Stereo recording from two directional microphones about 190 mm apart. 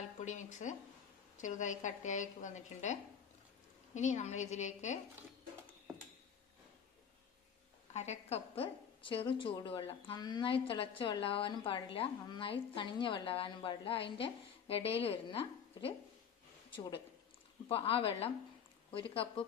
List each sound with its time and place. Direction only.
0.2 s a woman's voice: 40° left (ahead or behind)
7.9 s a woman's voice: 35° left (ahead or behind)
17.6 s a woman's voice: 30° left (ahead or behind)